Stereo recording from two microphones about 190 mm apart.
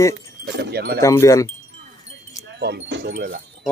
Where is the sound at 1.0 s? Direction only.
15° left (ahead or behind).